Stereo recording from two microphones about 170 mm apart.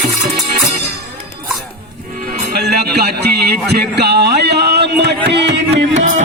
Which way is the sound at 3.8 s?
70° right (ahead or behind).